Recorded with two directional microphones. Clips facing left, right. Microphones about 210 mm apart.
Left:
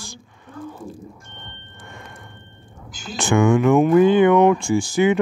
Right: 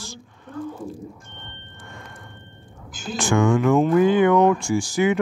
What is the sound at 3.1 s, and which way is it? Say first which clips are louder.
Speech: left 2 dB; 25° left (ahead or behind).